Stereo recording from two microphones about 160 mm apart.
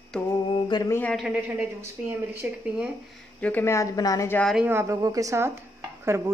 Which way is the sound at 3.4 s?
10° left (ahead or behind).